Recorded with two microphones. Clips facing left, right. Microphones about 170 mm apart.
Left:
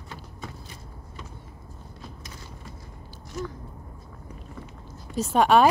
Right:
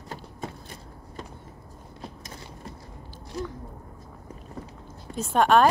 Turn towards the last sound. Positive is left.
turn(degrees=5)  # may be behind; listen again after turning